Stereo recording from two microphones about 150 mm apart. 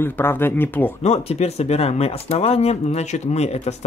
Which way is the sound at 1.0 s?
45° left (ahead or behind).